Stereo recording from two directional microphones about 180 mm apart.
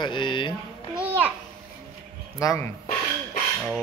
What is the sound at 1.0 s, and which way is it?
Babbling, 10° right (ahead or behind).